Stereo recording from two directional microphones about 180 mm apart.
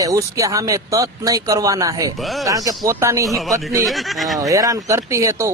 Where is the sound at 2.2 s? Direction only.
Centre (ahead or behind).